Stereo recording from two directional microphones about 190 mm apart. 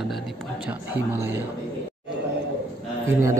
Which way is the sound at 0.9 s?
10° right (ahead or behind).